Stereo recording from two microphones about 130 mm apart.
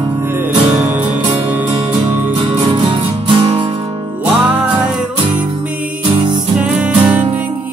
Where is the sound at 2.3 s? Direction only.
40° right (ahead or behind).